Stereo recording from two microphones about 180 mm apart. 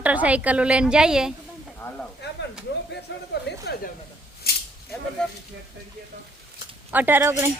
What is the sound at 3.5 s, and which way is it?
Snake, 65° left (ahead or behind).